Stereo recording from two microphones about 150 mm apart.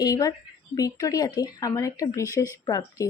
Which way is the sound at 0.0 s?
25° left (ahead or behind).